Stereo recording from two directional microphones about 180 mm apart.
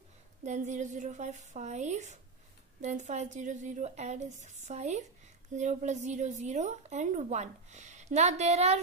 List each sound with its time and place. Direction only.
0.5 s speech: 40° right (ahead or behind)